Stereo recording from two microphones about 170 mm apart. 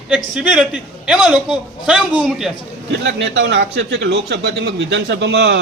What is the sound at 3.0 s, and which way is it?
Speech, 90° right.